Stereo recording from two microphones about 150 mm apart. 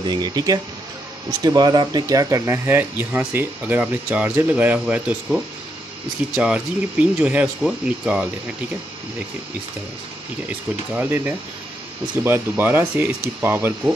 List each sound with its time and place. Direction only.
0.0 s speech: 30° right (ahead or behind); by 8.3 s 5° right (ahead or behind)
11.0 s speech: 15° right (ahead or behind)